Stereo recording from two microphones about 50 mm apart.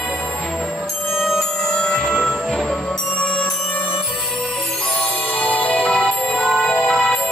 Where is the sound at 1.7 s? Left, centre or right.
Centre.